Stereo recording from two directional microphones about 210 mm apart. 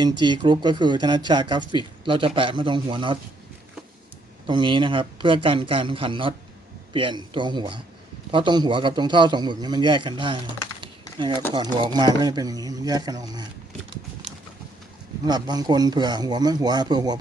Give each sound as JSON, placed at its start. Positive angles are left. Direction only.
{"t": 0.2, "sound": "a man's voice", "side_deg": -20}
{"t": 4.5, "sound": "a man's voice", "side_deg": -25}
{"t": 15.2, "sound": "a man's voice", "side_deg": -20}